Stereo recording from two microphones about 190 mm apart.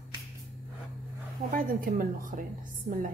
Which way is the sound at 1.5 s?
45° right (ahead or behind).